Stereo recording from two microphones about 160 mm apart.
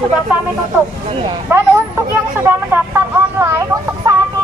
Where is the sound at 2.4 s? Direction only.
10° right (ahead or behind).